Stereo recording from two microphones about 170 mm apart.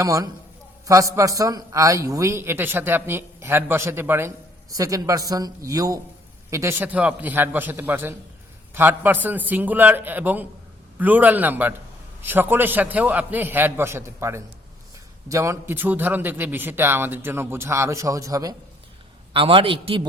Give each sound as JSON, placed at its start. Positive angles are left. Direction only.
{"t": 0.0, "sound": "a man's voice", "side_deg": -20}
{"t": 19.3, "sound": "a man's voice", "side_deg": -30}